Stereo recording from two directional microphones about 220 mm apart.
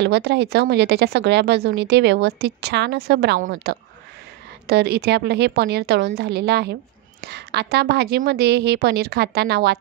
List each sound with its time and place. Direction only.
0.0 s a woman's voice: 50° right (ahead or behind)